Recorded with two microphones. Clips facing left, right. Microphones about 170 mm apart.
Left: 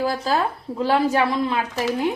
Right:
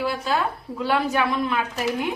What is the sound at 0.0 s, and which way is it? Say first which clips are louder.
Speech: left 2 dB; 35° left (ahead or behind).